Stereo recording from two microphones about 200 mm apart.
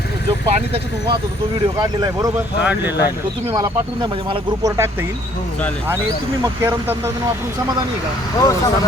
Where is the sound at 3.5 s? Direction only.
20° right (ahead or behind).